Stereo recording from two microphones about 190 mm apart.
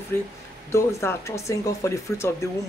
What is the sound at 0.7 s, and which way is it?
Speech, 15° left (ahead or behind).